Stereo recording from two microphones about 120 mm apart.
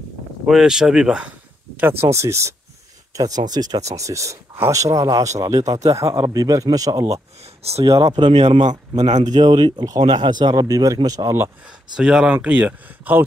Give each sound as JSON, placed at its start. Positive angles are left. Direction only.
{"t": 0.5, "sound": "speech", "side_deg": -5}
{"t": 1.8, "sound": "speech", "side_deg": -20}
{"t": 7.6, "sound": "speech", "side_deg": -60}
{"t": 7.9, "sound": "speech", "side_deg": -35}
{"t": 8.6, "sound": "speech", "side_deg": -70}
{"t": 9.3, "sound": "speech", "side_deg": -35}
{"t": 11.6, "sound": "speech", "side_deg": -5}